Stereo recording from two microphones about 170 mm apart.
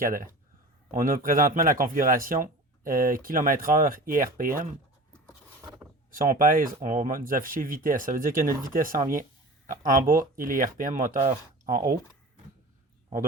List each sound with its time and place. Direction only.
0.0 s speech: 55° right (ahead or behind)
6.1 s speech: 55° right (ahead or behind)